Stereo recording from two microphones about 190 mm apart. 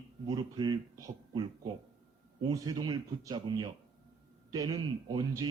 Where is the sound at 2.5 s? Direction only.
20° right (ahead or behind).